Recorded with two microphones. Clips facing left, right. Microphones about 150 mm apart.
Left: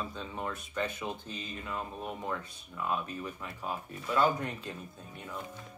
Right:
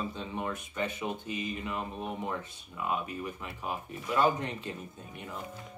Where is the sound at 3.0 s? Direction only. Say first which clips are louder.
Right 2 dB; 15° right (ahead or behind).